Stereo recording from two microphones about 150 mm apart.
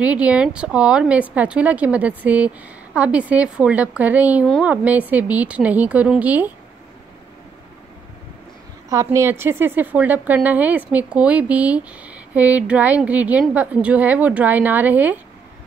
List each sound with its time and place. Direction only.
0.0 s a woman's voice: 10° right (ahead or behind)
8.8 s a woman's voice: 20° right (ahead or behind)